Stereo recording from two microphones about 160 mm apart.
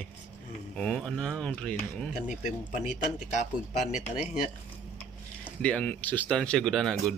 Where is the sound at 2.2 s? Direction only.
50° left (ahead or behind).